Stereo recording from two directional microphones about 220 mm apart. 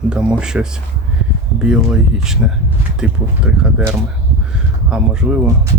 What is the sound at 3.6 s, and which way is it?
Speech, 5° right (ahead or behind).